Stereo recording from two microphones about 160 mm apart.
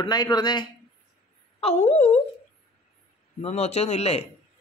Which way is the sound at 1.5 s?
40° left (ahead or behind).